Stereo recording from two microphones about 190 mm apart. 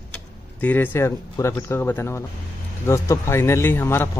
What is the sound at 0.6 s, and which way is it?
A man's voice, 10° left (ahead or behind).